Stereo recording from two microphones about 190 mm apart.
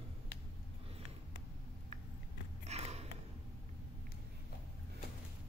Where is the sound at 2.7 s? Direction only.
35° right (ahead or behind).